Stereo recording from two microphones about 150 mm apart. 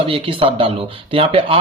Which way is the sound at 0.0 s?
35° right (ahead or behind).